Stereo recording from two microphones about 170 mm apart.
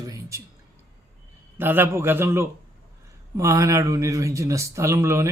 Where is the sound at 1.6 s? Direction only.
15° right (ahead or behind).